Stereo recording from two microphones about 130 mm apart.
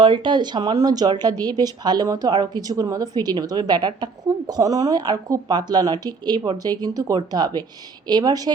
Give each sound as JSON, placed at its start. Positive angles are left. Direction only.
{"t": 0.0, "sound": "speech", "side_deg": -35}